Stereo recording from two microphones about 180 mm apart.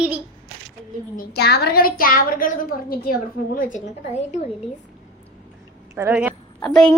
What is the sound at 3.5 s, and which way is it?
Speech, 45° left (ahead or behind).